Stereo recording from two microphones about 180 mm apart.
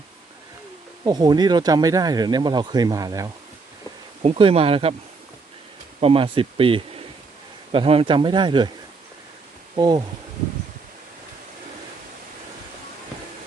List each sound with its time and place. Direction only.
1.0 s speech: 20° right (ahead or behind)
4.2 s speech: 35° right (ahead or behind)
6.0 s speech: 30° right (ahead or behind)
9.7 s speech: 25° right (ahead or behind)